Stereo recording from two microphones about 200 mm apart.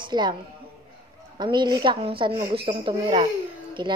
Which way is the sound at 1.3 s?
20° right (ahead or behind).